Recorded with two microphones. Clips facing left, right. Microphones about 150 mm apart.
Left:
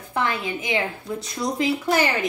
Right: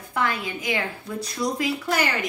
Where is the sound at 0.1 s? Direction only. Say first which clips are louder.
Left 1 dB; 25° left (ahead or behind).